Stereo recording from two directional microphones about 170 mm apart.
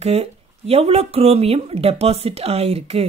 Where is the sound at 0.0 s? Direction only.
40° right (ahead or behind).